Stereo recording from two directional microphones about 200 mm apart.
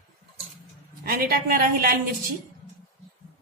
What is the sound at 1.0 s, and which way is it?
Speech, 50° right (ahead or behind).